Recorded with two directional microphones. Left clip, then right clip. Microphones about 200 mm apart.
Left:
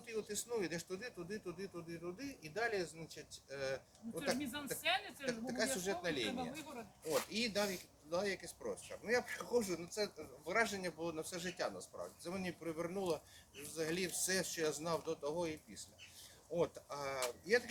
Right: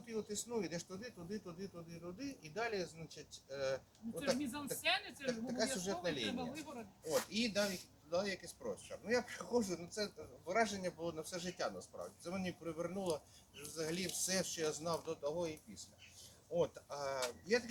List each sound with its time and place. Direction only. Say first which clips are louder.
0.1 s speech: left 1 dB; 5° left (ahead or behind)
4.4 s speech: even; 40° right (ahead or behind)
5.2 s speech: even; 5° left (ahead or behind)
6.5 s speech: even; 40° right (ahead or behind)
7.0 s speech: even; 5° right (ahead or behind)
16.6 s speech: right 1 dB; 5° left (ahead or behind)